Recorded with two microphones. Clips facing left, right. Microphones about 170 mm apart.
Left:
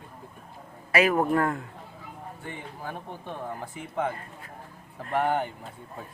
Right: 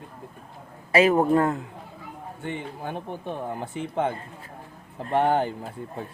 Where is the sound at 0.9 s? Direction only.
25° right (ahead or behind).